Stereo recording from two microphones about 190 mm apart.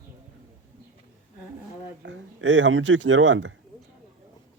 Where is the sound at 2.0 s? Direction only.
75° right (ahead or behind).